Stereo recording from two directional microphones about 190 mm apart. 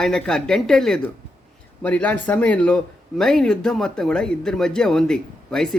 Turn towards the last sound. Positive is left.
turn(degrees=5)  # may be behind; listen again after turning